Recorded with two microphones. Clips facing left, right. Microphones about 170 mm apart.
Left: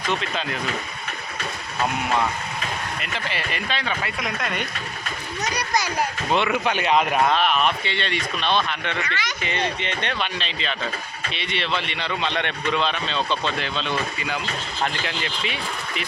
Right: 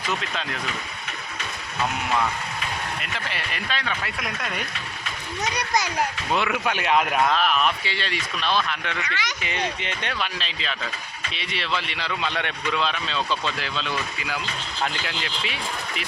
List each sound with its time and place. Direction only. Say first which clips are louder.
0.1 s speech: left 3 dB; 5° right (ahead or behind)
3.0 s speech: left 3 dB; centre (ahead or behind)
5.5 s a child's voice: even; 20° right (ahead or behind)
6.3 s speech: left 3 dB; centre (ahead or behind)